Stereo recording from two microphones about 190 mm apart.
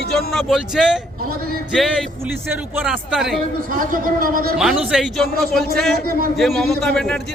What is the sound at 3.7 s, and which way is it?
Speech, 45° right (ahead or behind).